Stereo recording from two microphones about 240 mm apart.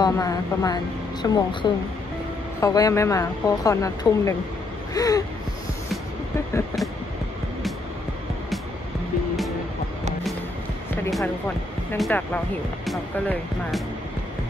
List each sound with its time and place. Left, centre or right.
0.0 s a woman's voice: centre
11.1 s a woman's voice: centre